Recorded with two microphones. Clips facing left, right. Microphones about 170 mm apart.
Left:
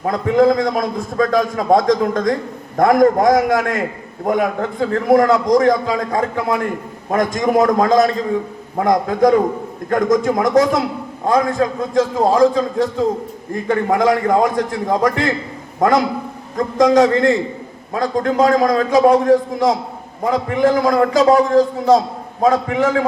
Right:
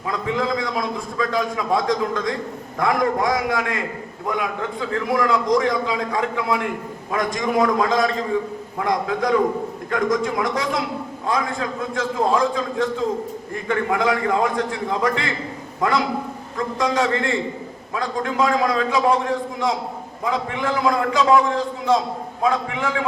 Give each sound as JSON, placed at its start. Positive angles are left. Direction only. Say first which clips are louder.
{"t": 0.0, "sound": "a man's voice", "louder": "left 10 dB", "side_deg": 45}
{"t": 16.6, "sound": "a man's voice", "louder": "left 9 dB", "side_deg": 40}